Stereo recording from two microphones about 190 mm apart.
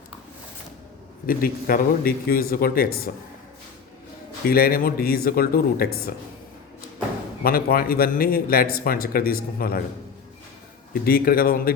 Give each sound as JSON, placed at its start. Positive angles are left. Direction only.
{"t": 1.3, "sound": "a man's voice", "side_deg": 50}
{"t": 4.4, "sound": "a man's voice", "side_deg": 50}
{"t": 7.4, "sound": "a man's voice", "side_deg": 50}
{"t": 10.9, "sound": "a man's voice", "side_deg": 55}